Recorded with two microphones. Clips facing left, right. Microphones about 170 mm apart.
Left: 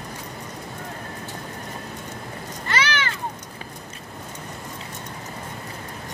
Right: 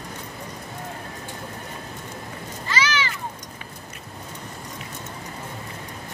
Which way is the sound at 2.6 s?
60° left (ahead or behind).